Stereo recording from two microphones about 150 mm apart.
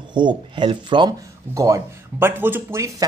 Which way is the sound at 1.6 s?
20° right (ahead or behind).